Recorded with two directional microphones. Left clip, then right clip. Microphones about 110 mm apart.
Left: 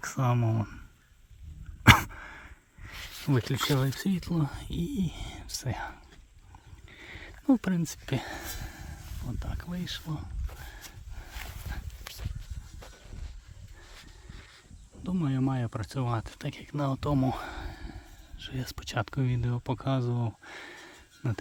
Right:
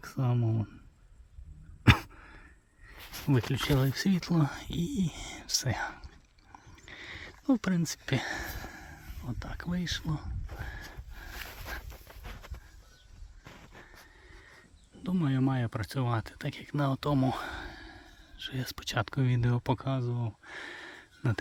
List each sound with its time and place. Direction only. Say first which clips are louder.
0.2 s speech: left 4 dB; 15° right (ahead or behind)
0.4 s speech: left 3 dB; centre (ahead or behind)
2.0 s sigh: left 9 dB; 10° right (ahead or behind)
2.2 s a sound: left 8 dB; 5° right (ahead or behind)
3.3 s speech: left 1 dB; 5° right (ahead or behind)
4.5 s speech: even; centre (ahead or behind)
6.8 s a sound: right 3 dB; centre (ahead or behind)
7.1 s a sound: left 3 dB; 20° left (ahead or behind)
7.8 s speech: right 2 dB; centre (ahead or behind)
15.0 s speech: even; centre (ahead or behind)
19.4 s speech: right 3 dB; 20° right (ahead or behind)
20.0 s speech: left 4 dB; 40° left (ahead or behind)
20.5 s a sound: right 2 dB; centre (ahead or behind)